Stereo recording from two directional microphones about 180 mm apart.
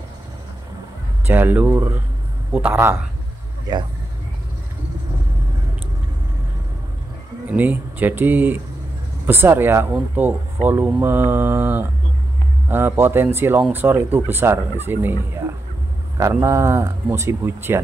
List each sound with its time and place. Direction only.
1.2 s speech: 10° right (ahead or behind)
7.5 s speech: 10° right (ahead or behind)
16.2 s speech: 15° right (ahead or behind)